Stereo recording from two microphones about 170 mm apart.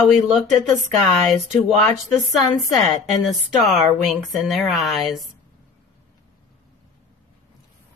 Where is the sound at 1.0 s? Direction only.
Centre (ahead or behind).